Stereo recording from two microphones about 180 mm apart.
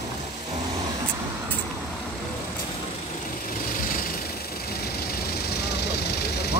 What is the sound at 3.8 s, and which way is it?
Vehicle, 50° left (ahead or behind).